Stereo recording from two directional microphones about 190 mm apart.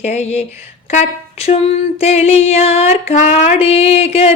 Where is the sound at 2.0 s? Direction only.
35° left (ahead or behind).